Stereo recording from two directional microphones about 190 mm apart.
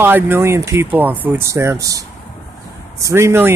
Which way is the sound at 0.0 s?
10° right (ahead or behind).